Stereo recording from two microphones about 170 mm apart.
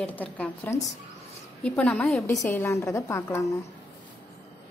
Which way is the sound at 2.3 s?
15° left (ahead or behind).